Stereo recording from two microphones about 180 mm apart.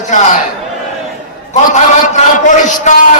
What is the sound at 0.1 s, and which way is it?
Speech, 40° left (ahead or behind).